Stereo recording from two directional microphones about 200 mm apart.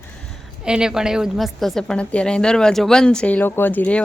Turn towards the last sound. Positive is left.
turn(degrees=5)  # may be behind; listen again after turning